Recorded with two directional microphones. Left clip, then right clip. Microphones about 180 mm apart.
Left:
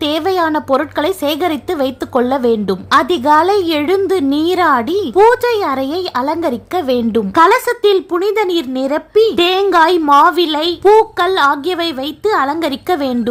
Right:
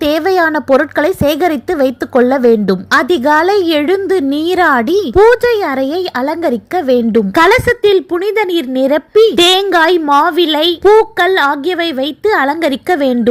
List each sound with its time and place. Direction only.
0.0 s speech: 20° right (ahead or behind)